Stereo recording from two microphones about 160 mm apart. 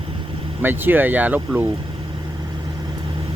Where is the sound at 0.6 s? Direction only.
10° right (ahead or behind).